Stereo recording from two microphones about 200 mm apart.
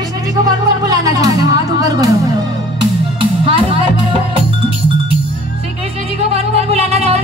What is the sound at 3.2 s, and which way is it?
Music, 25° right (ahead or behind).